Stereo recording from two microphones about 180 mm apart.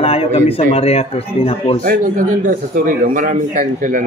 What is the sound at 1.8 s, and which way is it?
A man's voice, 50° right (ahead or behind).